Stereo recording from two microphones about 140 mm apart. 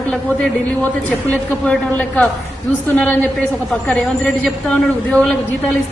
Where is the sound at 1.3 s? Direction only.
5° left (ahead or behind).